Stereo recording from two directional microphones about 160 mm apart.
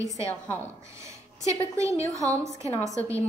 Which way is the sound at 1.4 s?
20° right (ahead or behind).